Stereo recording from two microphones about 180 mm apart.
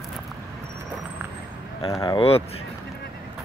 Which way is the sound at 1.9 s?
25° left (ahead or behind).